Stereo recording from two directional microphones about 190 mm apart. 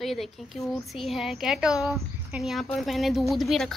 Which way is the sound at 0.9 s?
Centre (ahead or behind).